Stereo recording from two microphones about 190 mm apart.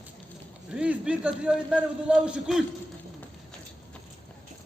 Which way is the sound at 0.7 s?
5° right (ahead or behind).